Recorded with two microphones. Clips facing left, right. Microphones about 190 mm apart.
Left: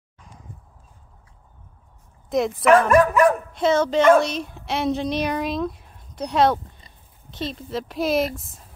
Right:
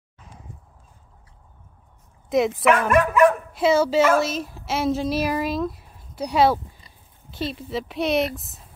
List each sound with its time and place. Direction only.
2.2 s speech: centre (ahead or behind)
2.9 s speech: 35° left (ahead or behind)
3.5 s speech: 5° right (ahead or behind)